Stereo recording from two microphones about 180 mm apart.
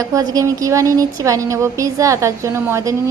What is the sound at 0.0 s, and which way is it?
Speech, 20° right (ahead or behind).